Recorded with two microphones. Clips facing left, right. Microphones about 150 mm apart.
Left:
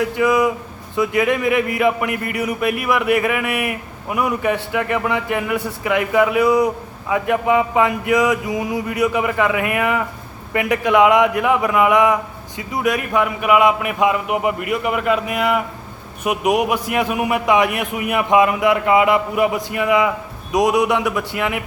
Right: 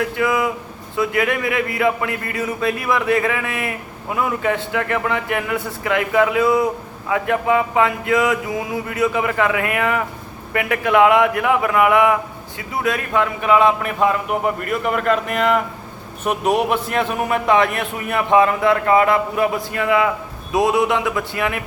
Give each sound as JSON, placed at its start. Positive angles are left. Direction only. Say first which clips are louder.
{"t": 0.0, "sound": "a man's voice", "louder": "left 3 dB", "side_deg": 20}